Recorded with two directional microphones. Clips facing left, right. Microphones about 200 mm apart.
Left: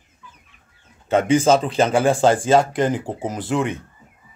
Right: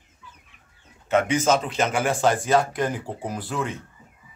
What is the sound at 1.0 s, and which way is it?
Speech, 30° left (ahead or behind).